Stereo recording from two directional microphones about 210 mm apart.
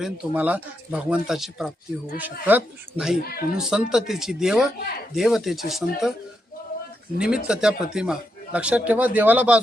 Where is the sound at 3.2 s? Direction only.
45° left (ahead or behind).